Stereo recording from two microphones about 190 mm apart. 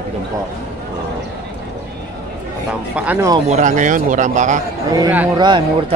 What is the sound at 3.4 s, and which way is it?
Speech, 40° right (ahead or behind).